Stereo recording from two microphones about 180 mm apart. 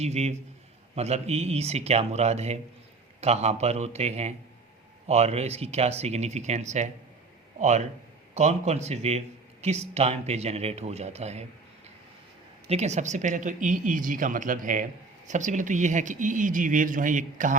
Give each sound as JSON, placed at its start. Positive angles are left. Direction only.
{"t": 0.0, "sound": "speech", "side_deg": -40}
{"t": 12.6, "sound": "speech", "side_deg": -35}